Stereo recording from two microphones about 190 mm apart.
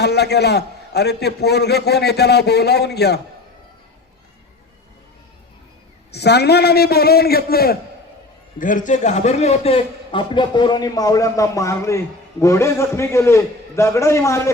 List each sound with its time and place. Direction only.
0.0 s a man's voice: 60° left (ahead or behind)
6.1 s a man's voice: 60° left (ahead or behind); by 14.5 s 15° left (ahead or behind)